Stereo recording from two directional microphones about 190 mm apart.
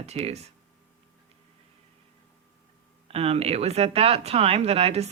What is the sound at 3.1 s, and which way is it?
Speech, 30° right (ahead or behind).